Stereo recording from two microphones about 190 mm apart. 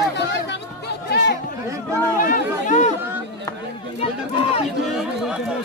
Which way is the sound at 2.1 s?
45° left (ahead or behind).